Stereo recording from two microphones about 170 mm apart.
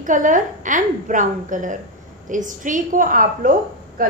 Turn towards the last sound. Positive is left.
turn(degrees=-55)  # may be behind; listen again after turning